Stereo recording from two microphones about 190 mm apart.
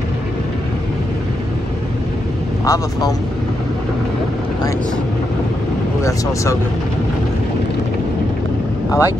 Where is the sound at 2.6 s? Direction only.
20° left (ahead or behind).